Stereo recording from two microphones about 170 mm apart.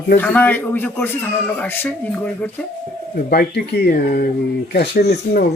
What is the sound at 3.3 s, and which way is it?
Speech, 65° left (ahead or behind).